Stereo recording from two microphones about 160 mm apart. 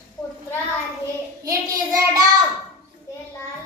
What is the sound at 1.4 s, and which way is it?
Child singing, 20° right (ahead or behind).